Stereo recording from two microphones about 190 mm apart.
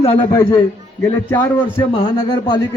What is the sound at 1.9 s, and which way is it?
Speech, 25° left (ahead or behind).